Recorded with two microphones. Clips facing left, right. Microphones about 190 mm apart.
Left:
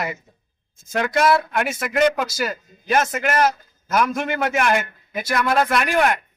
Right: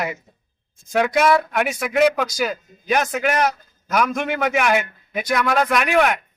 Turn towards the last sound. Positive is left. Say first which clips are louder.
# right 1 dB
turn(degrees=0)  # may be behind; listen again after turning